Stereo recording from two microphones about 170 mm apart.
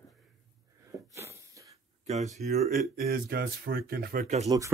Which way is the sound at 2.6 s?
60° right (ahead or behind).